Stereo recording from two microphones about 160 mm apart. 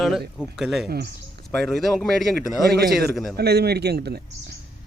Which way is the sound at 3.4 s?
90° right.